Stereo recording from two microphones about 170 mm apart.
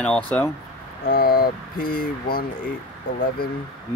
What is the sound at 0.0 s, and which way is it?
Speech, 5° left (ahead or behind).